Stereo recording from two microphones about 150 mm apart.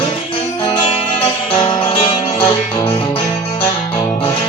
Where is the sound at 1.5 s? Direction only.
35° left (ahead or behind).